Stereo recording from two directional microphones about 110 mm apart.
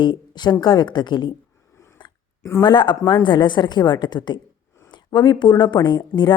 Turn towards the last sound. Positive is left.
turn(degrees=40)  # may be behind; listen again after turning